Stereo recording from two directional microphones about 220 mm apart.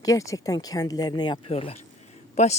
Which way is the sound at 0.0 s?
15° left (ahead or behind).